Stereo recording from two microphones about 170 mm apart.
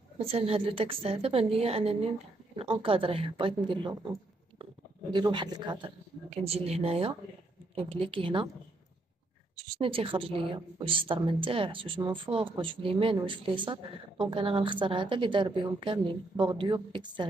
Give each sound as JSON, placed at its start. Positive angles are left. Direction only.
{"t": 0.2, "sound": "a woman's voice", "side_deg": -35}
{"t": 5.1, "sound": "a woman's voice", "side_deg": -25}
{"t": 9.6, "sound": "a woman's voice", "side_deg": -35}